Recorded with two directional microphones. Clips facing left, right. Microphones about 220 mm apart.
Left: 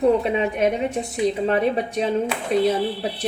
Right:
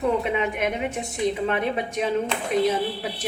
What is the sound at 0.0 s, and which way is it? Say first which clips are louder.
Speech: left 5 dB; 35° left (ahead or behind).